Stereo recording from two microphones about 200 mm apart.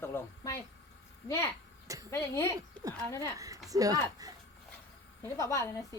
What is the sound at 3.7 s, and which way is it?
Speech, 20° right (ahead or behind).